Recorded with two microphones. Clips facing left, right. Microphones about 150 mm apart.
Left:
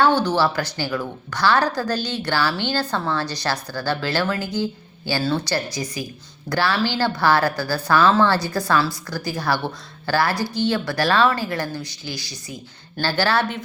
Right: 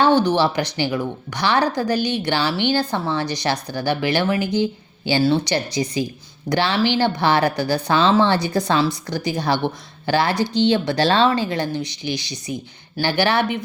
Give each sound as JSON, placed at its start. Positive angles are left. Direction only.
{"t": 0.0, "sound": "a woman's voice", "side_deg": -15}